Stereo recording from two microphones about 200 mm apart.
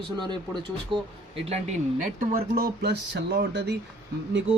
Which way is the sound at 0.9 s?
25° right (ahead or behind).